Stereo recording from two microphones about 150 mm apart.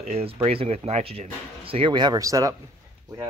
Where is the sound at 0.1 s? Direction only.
40° right (ahead or behind).